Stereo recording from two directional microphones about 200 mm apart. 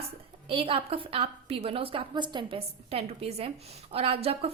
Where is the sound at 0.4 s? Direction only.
30° right (ahead or behind).